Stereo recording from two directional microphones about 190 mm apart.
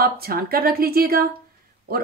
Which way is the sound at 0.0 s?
50° right (ahead or behind).